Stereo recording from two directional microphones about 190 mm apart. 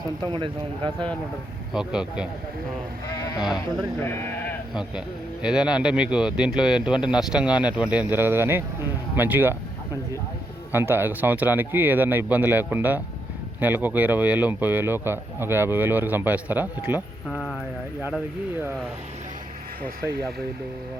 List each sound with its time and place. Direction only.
0.2 s speech: 25° right (ahead or behind)
1.7 s a man's voice: 5° right (ahead or behind)
3.2 s sheep: 20° left (ahead or behind)
3.4 s a man's voice: centre (ahead or behind)
4.0 s speech: 10° left (ahead or behind)
4.7 s a man's voice: 5° right (ahead or behind)
10.7 s speech: 10° right (ahead or behind)
17.2 s a man's voice: 5° left (ahead or behind)